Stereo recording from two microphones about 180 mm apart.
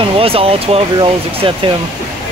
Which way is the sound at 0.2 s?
30° right (ahead or behind).